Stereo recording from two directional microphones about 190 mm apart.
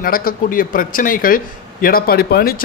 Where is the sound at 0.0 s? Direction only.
50° left (ahead or behind).